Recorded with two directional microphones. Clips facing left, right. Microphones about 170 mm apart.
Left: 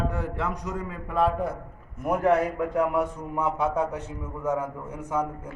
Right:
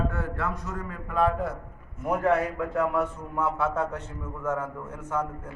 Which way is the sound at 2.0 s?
10° left (ahead or behind).